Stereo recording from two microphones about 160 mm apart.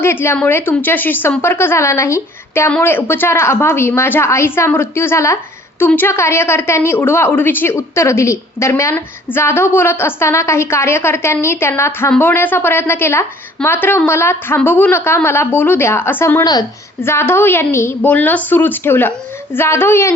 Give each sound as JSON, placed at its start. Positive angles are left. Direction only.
{"t": 0.0, "sound": "a woman's voice", "side_deg": 15}
{"t": 16.4, "sound": "a woman's voice", "side_deg": 25}